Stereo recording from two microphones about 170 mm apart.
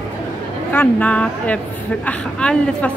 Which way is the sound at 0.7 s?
10° left (ahead or behind).